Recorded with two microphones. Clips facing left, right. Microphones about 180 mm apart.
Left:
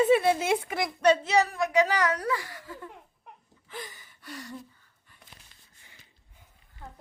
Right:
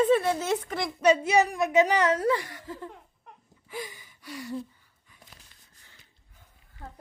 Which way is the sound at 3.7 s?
5° right (ahead or behind).